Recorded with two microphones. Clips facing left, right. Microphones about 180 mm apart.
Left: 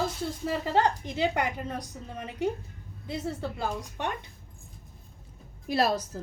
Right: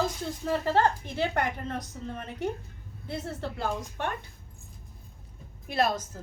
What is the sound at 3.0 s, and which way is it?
A woman's voice, 10° left (ahead or behind).